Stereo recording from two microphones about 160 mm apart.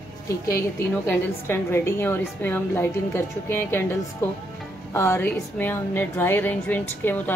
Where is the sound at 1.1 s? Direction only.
15° left (ahead or behind).